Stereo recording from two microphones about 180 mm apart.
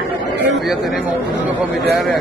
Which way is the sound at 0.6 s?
Centre (ahead or behind).